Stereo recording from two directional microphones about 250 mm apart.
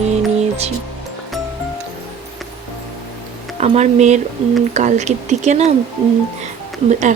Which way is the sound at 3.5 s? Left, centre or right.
Right.